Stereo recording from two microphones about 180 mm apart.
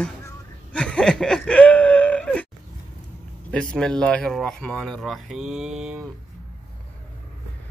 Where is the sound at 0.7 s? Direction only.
5° left (ahead or behind).